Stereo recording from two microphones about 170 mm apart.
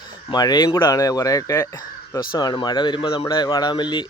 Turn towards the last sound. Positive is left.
turn(degrees=25)  # may be behind; listen again after turning